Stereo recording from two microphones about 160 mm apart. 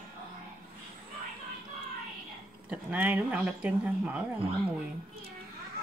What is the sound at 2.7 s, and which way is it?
Speech, 10° right (ahead or behind).